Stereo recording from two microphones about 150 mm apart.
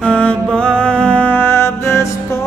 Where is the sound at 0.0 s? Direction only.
10° left (ahead or behind).